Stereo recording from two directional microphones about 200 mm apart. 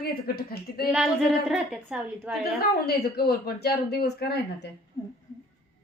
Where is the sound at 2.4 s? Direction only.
50° left (ahead or behind).